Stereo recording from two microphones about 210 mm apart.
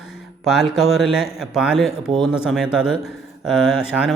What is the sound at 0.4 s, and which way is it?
Speech, centre (ahead or behind).